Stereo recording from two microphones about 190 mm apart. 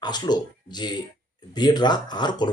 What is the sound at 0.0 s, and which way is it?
Speech, 20° left (ahead or behind).